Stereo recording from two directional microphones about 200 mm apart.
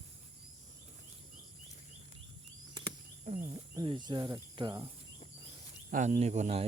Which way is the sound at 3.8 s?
20° right (ahead or behind).